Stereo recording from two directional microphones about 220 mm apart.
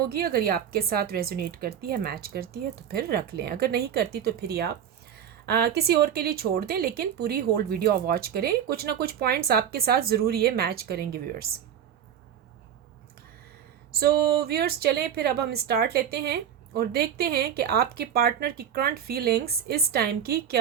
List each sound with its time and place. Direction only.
0.1 s a woman's voice: 45° right (ahead or behind)
14.0 s a woman's voice: 45° right (ahead or behind)